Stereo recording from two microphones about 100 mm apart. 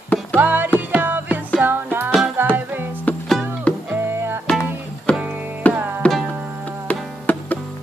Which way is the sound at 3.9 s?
20° right (ahead or behind).